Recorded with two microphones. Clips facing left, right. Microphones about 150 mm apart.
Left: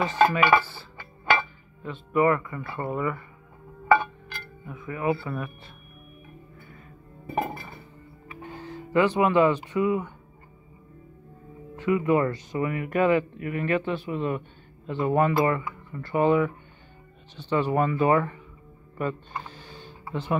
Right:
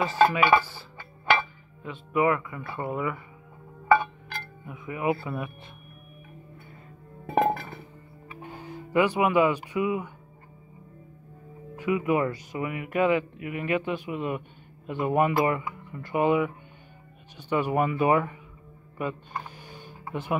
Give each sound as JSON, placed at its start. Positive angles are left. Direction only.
{"t": 0.0, "sound": "speech", "side_deg": -5}
{"t": 4.6, "sound": "speech", "side_deg": -15}
{"t": 7.2, "sound": "music", "side_deg": -90}
{"t": 8.4, "sound": "speech", "side_deg": -10}
{"t": 11.7, "sound": "speech", "side_deg": -10}
{"t": 18.9, "sound": "a sound", "side_deg": -10}